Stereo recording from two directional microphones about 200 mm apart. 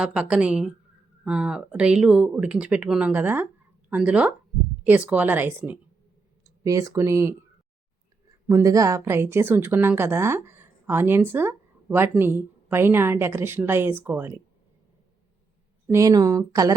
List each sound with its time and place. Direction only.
0.0 s a woman's voice: 5° right (ahead or behind)
8.4 s a woman's voice: 15° right (ahead or behind)
15.9 s a woman's voice: 15° right (ahead or behind)